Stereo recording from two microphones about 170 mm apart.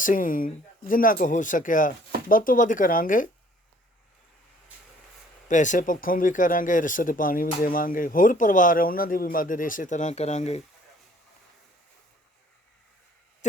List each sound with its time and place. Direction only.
0.0 s speech: 50° left (ahead or behind)
5.5 s speech: 45° left (ahead or behind)
13.4 s speech: 45° left (ahead or behind)